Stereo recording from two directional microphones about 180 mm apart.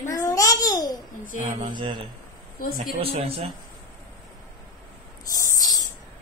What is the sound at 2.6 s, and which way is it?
Speech, 55° left (ahead or behind).